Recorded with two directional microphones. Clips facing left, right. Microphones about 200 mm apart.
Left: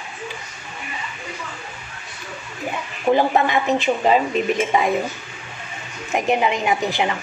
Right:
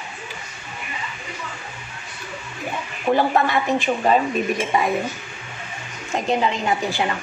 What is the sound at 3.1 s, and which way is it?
A woman's voice, 15° left (ahead or behind).